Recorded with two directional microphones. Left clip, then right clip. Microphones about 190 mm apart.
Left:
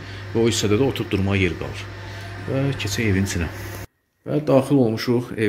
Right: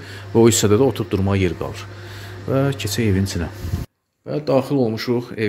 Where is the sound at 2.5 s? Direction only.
50° right (ahead or behind).